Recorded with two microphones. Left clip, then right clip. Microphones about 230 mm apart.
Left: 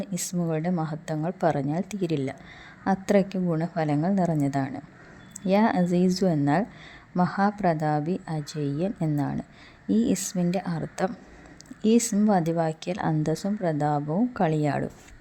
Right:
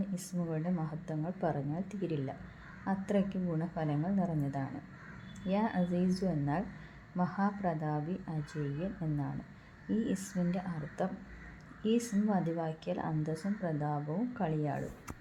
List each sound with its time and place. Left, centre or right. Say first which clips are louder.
0.0 s speech: left 9 dB; left